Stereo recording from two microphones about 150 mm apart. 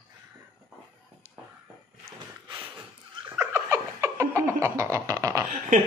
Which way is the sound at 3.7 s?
20° right (ahead or behind).